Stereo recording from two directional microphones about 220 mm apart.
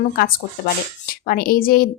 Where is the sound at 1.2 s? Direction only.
40° left (ahead or behind).